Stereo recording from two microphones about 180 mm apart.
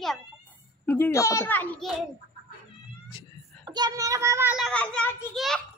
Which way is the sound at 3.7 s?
20° right (ahead or behind).